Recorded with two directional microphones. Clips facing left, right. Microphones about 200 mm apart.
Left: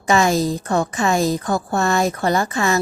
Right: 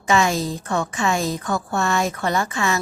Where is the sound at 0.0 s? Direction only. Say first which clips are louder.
Left 3 dB; 40° left (ahead or behind).